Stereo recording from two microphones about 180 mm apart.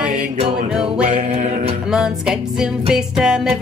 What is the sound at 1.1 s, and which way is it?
Music, 45° right (ahead or behind).